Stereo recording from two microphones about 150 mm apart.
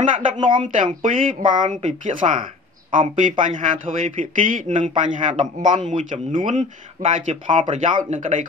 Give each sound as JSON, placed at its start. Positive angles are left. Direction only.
{"t": 0.4, "sound": "speech", "side_deg": -30}
{"t": 1.0, "sound": "speech", "side_deg": -60}